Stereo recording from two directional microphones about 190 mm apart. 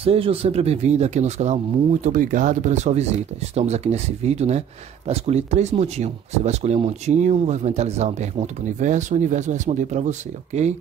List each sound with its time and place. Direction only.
0.0 s speech: 30° right (ahead or behind)